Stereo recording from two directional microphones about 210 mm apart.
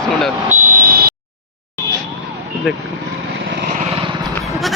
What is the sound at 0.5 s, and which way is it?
Buzzer, 40° right (ahead or behind).